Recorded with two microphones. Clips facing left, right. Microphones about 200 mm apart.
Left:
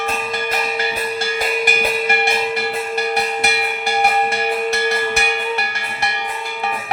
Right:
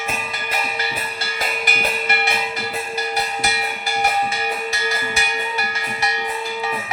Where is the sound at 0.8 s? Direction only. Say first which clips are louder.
Left 6 dB; 50° left (ahead or behind).